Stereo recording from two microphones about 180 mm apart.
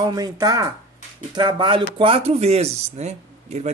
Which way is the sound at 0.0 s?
20° right (ahead or behind).